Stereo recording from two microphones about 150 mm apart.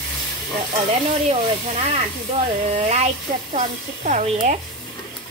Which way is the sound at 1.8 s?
45° right (ahead or behind).